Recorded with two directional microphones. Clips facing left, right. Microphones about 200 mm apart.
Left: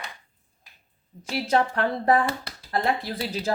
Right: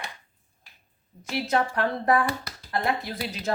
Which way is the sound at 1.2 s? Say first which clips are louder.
Left 2 dB; 30° left (ahead or behind).